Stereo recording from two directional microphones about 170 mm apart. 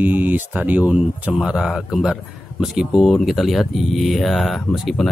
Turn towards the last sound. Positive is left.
turn(degrees=0)  # may be behind; listen again after turning